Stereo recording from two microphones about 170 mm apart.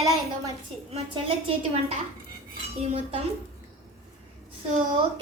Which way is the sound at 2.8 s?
35° right (ahead or behind).